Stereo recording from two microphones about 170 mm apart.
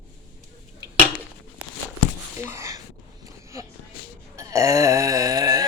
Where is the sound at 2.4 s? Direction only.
15° right (ahead or behind).